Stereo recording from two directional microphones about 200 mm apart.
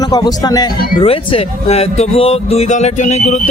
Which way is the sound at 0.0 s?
20° left (ahead or behind).